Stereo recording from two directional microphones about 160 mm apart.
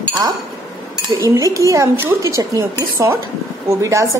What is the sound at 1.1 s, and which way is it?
Speech, 20° right (ahead or behind).